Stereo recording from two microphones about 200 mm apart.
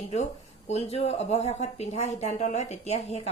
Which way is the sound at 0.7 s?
30° left (ahead or behind).